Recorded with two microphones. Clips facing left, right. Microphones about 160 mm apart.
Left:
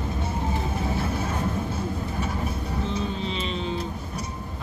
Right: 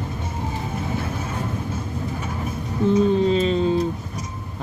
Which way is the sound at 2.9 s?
45° right (ahead or behind).